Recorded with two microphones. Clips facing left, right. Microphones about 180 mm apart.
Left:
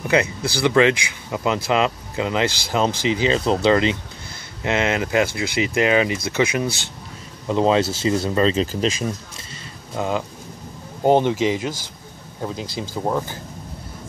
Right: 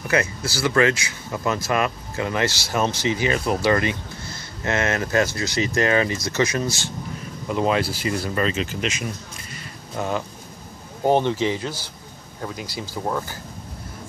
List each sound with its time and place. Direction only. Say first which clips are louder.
0.1 s speech: left 3 dB; 20° left (ahead or behind)
7.4 s speech: left 4 dB; 25° left (ahead or behind)
9.9 s speech: left 2 dB; 15° left (ahead or behind)